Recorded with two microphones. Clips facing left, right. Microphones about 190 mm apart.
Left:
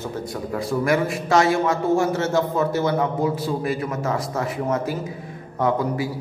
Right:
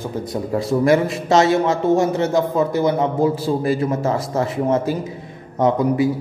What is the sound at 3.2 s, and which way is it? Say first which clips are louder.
A man's voice: right 5 dB; 30° right (ahead or behind).